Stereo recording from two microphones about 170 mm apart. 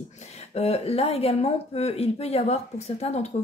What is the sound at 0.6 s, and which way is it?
A woman's voice, 35° left (ahead or behind).